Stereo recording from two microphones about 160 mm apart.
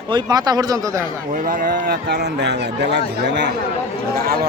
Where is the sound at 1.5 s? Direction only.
55° right (ahead or behind); by 3.5 s 90° right.